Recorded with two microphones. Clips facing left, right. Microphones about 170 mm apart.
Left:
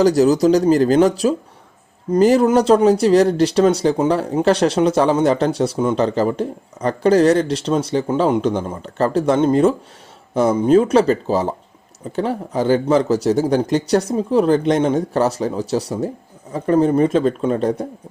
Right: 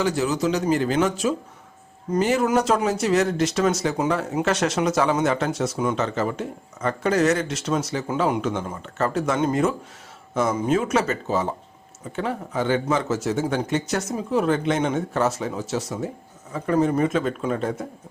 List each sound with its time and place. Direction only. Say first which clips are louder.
0.0 s speech: left 9 dB; 40° left (ahead or behind)